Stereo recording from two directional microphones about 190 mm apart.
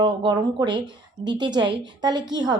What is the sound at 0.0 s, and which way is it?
A woman's voice, 25° right (ahead or behind).